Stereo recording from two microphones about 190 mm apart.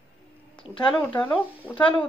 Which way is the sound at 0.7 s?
30° left (ahead or behind).